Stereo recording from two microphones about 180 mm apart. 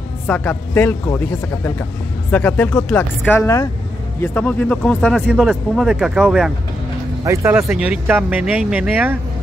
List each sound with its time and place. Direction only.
0.3 s speech: 10° left (ahead or behind)
7.2 s speech: 15° right (ahead or behind)